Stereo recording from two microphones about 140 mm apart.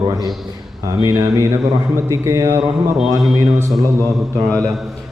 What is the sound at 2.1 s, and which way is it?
Speech, 25° right (ahead or behind).